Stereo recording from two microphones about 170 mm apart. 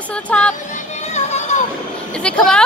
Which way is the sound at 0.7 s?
40° left (ahead or behind).